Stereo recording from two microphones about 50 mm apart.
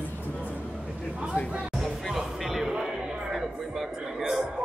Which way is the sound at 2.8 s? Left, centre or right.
Centre.